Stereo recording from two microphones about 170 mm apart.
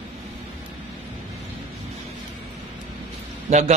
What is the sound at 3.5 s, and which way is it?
Speech, 45° right (ahead or behind).